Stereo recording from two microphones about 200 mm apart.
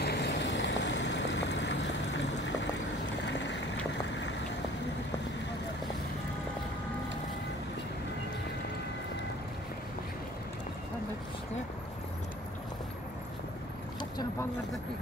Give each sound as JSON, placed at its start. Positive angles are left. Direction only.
{"t": 0.0, "sound": "boat", "side_deg": 60}
{"t": 3.3, "sound": "boat", "side_deg": 60}